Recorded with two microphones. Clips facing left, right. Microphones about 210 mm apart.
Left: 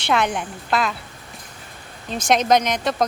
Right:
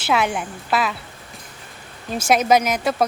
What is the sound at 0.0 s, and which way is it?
Speech, 5° right (ahead or behind).